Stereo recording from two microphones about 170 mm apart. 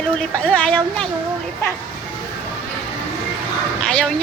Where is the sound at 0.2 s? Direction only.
5° left (ahead or behind).